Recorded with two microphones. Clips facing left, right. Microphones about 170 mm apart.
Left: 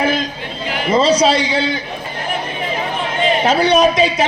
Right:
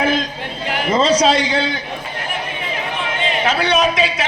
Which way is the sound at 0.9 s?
5° left (ahead or behind).